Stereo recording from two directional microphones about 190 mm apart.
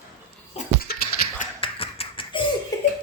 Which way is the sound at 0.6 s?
35° left (ahead or behind).